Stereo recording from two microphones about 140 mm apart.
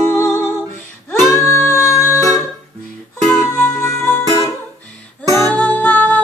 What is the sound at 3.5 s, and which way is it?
Music, 10° left (ahead or behind).